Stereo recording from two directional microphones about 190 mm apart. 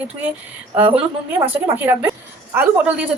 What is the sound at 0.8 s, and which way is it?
Speech, 30° right (ahead or behind).